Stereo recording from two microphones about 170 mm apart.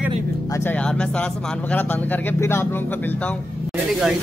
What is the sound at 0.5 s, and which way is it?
Speech, 10° left (ahead or behind).